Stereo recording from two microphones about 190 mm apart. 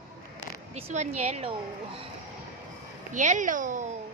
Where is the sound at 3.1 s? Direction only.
40° right (ahead or behind).